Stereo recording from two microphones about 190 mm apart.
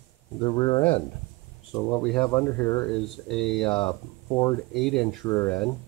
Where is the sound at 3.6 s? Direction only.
25° left (ahead or behind).